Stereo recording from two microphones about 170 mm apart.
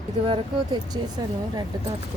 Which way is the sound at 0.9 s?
25° right (ahead or behind).